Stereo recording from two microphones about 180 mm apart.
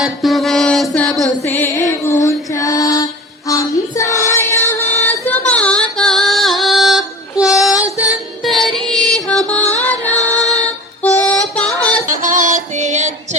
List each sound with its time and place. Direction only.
0.0 s music: centre (ahead or behind)
1.5 s female singing: 10° left (ahead or behind)
3.5 s child singing: 20° left (ahead or behind)
4.7 s female singing: 10° left (ahead or behind)
5.3 s music: 10° left (ahead or behind)
10.2 s female singing: 20° right (ahead or behind)
11.0 s music: 5° left (ahead or behind)
12.0 s music: 45° right (ahead or behind)